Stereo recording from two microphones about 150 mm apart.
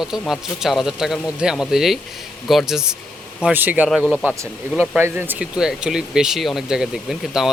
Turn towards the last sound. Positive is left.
turn(degrees=-5)  # may be behind; listen again after turning